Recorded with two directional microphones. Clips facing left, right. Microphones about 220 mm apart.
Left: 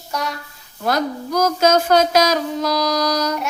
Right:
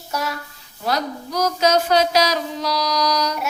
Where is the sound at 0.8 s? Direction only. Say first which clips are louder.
Left 3 dB; 50° left (ahead or behind).